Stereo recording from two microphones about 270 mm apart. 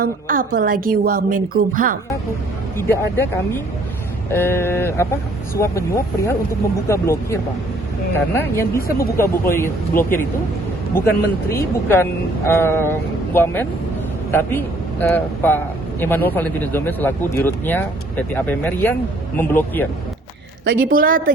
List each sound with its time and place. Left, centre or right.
0.0 s a woman's voice: right
2.7 s a man's voice: centre
20.7 s a woman's voice: right